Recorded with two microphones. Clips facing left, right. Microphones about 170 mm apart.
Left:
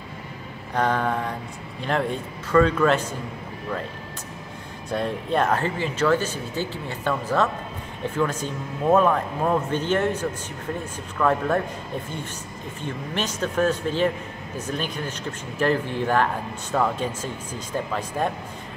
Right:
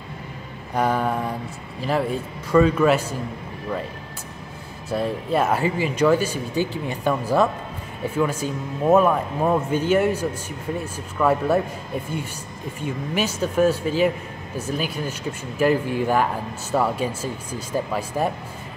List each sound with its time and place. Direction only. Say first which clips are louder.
0.7 s speech: right 1 dB; 10° right (ahead or behind)
4.8 s speech: right 2 dB; 5° right (ahead or behind)
12.8 s speech: right 4 dB; 10° right (ahead or behind)